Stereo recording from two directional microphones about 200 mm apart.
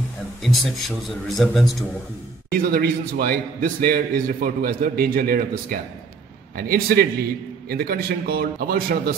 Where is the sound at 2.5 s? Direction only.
45° right (ahead or behind).